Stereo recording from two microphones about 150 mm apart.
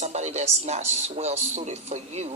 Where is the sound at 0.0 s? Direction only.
50° right (ahead or behind).